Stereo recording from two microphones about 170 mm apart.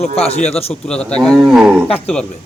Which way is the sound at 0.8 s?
5° left (ahead or behind).